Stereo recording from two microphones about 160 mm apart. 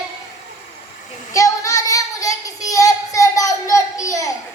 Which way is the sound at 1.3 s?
20° left (ahead or behind).